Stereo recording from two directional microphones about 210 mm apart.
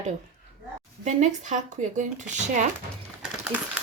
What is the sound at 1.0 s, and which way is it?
Speech, 35° right (ahead or behind).